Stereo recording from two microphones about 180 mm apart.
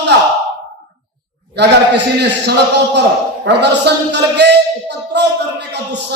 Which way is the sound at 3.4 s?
70° right (ahead or behind).